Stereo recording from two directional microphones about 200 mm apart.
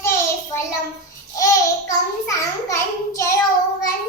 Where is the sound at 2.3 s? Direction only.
15° left (ahead or behind).